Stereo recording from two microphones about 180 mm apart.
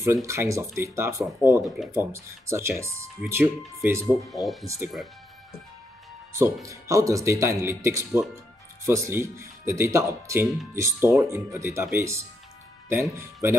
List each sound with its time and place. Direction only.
0.0 s speech: 15° right (ahead or behind)
4.3 s speech: centre (ahead or behind)
4.6 s speech: 15° right (ahead or behind)
6.3 s speech: 15° right (ahead or behind)
13.2 s speech: 15° right (ahead or behind)